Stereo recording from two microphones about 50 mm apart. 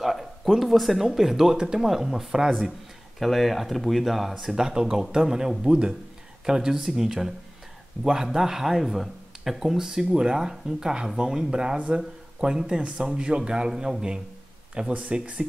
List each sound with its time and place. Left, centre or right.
0.0 s speech: centre
14.8 s speech: right